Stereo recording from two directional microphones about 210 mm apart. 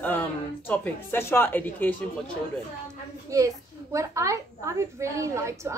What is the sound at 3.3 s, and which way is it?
A child's voice, 15° right (ahead or behind).